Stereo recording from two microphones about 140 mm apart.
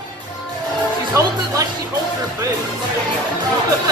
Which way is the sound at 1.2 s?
20° right (ahead or behind).